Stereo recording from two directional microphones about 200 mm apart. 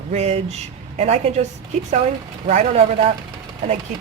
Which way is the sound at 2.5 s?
35° right (ahead or behind).